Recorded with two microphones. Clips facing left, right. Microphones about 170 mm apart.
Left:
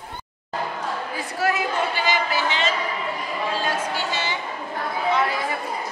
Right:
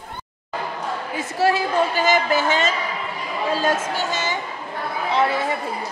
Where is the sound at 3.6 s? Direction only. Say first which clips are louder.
Right 4 dB; 45° right (ahead or behind).